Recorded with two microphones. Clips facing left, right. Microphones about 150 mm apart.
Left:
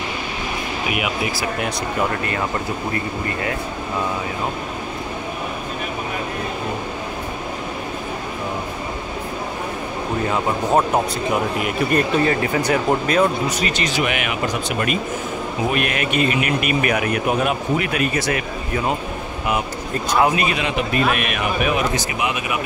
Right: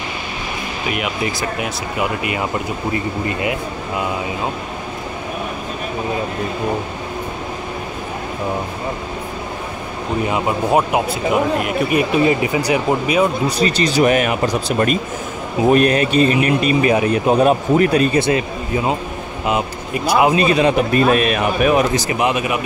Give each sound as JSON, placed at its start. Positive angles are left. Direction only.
{"t": 0.8, "sound": "speech", "side_deg": 5}
{"t": 10.3, "sound": "speech", "side_deg": -10}
{"t": 13.5, "sound": "speech", "side_deg": -35}
{"t": 19.9, "sound": "speech", "side_deg": -10}
{"t": 20.2, "sound": "speech", "side_deg": -30}